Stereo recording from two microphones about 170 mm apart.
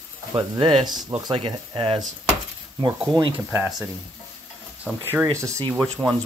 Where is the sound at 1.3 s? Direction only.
30° right (ahead or behind).